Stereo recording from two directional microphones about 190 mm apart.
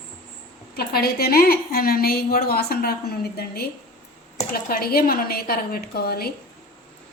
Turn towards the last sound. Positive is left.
turn(degrees=55)  # may be behind; listen again after turning